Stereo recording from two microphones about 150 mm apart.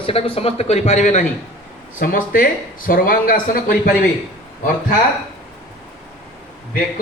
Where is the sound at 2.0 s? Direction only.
65° left (ahead or behind).